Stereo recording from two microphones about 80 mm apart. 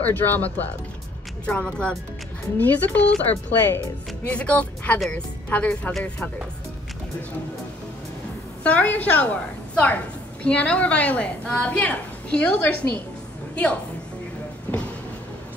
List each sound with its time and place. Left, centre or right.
0.0 s a woman's voice: left
8.6 s a woman's voice: centre
14.7 s a sound: left